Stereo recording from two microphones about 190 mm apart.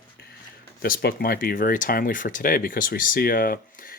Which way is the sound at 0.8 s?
55° left (ahead or behind).